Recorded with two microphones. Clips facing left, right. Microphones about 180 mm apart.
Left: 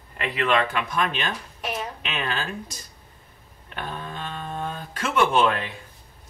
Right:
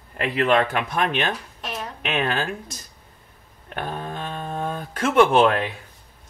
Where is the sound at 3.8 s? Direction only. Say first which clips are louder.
Right 4 dB; 45° right (ahead or behind).